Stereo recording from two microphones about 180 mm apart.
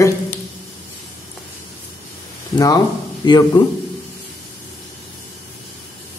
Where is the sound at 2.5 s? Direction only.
20° left (ahead or behind).